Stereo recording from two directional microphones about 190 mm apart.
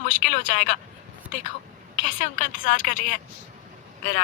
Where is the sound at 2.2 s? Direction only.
45° left (ahead or behind).